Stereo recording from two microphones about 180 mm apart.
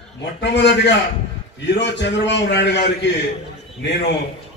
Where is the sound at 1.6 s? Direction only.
75° left (ahead or behind).